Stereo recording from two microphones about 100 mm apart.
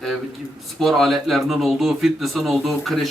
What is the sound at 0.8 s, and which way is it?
A man's voice, centre (ahead or behind).